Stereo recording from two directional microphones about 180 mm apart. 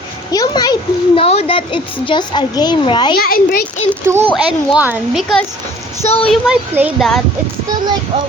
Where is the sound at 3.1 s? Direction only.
55° left (ahead or behind).